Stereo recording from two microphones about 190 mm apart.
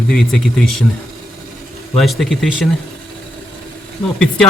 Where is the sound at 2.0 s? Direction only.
Centre (ahead or behind).